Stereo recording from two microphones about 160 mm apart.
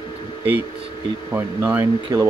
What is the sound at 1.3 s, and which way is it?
Speech, 10° right (ahead or behind).